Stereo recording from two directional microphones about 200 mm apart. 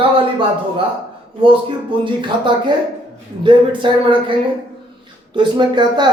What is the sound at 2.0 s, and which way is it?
Speech, 25° right (ahead or behind).